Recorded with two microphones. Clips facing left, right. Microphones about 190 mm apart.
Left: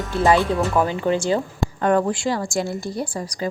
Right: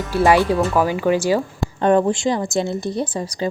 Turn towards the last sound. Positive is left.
turn(degrees=-20)  # may be behind; listen again after turning